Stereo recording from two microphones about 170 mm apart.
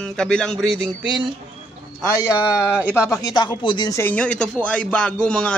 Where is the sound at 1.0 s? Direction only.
25° right (ahead or behind).